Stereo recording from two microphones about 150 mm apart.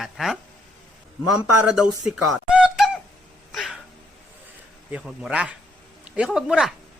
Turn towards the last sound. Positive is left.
turn(degrees=-5)  # may be behind; listen again after turning